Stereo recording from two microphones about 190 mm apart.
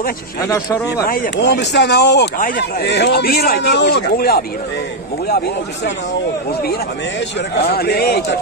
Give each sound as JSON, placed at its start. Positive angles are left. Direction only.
{"t": 1.0, "sound": "speech", "side_deg": 50}
{"t": 7.5, "sound": "speech", "side_deg": 55}